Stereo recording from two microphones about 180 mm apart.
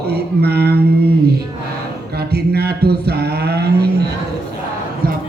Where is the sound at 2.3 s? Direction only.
60° right (ahead or behind).